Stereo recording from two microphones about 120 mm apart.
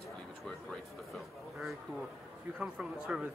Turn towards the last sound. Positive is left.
turn(degrees=-10)  # may be behind; listen again after turning